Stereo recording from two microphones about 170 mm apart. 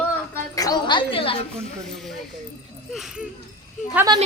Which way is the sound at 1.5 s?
Centre (ahead or behind).